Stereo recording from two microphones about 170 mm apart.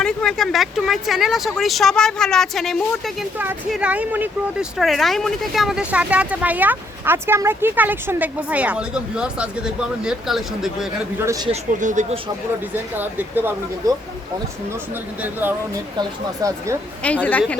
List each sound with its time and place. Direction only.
0.0 s speech: 5° left (ahead or behind)
11.2 s speech: 20° right (ahead or behind)
11.8 s speech: 45° right (ahead or behind)
13.0 s speech: 10° right (ahead or behind)
15.2 s speech: 10° right (ahead or behind)
17.0 s a woman's voice: 10° left (ahead or behind)